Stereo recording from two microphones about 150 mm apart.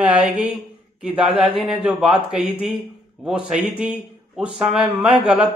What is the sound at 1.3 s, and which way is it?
Speech, 35° right (ahead or behind).